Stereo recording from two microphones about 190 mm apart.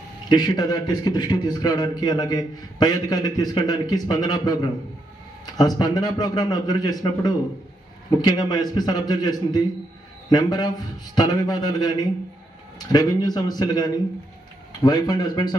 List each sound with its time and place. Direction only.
0.3 s a man's voice: 20° left (ahead or behind)